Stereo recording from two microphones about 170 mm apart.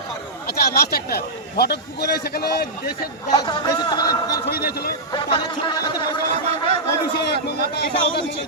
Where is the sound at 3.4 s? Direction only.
25° left (ahead or behind).